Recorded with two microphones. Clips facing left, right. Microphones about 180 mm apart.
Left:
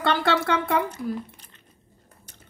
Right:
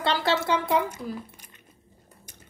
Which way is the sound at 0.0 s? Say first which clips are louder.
Left 2 dB; 55° left (ahead or behind).